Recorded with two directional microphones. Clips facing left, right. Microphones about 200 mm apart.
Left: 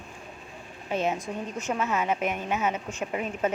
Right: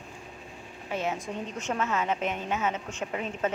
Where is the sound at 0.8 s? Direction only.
20° left (ahead or behind).